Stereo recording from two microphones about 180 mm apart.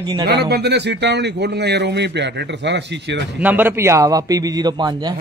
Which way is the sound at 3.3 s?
10° right (ahead or behind).